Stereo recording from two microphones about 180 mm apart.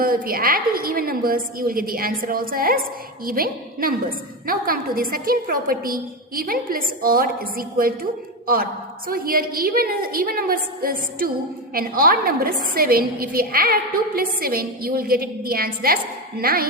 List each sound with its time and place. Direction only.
0.0 s a woman's voice: 55° right (ahead or behind)
9.0 s a woman's voice: 55° right (ahead or behind)